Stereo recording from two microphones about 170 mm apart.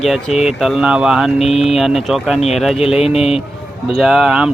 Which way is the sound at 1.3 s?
40° left (ahead or behind).